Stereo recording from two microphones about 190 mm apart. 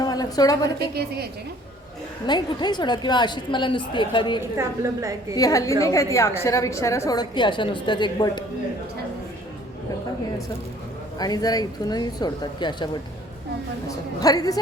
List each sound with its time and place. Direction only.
0.0 s a sound: 20° left (ahead or behind)
2.2 s a woman's voice: 20° left (ahead or behind)
4.5 s a woman's voice: 15° right (ahead or behind)
5.4 s a woman's voice: 15° left (ahead or behind)
11.2 s a woman's voice: 20° left (ahead or behind)